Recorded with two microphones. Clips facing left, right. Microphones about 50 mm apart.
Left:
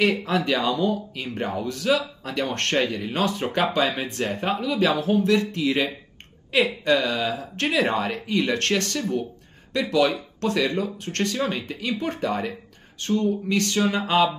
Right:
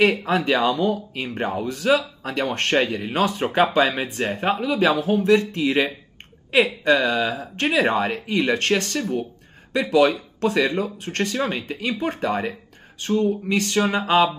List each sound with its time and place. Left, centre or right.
0.0 s speech: centre